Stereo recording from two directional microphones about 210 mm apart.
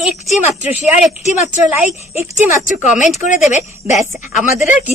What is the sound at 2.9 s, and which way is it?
Speech, 35° left (ahead or behind).